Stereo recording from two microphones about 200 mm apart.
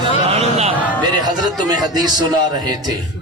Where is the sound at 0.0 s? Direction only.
30° right (ahead or behind).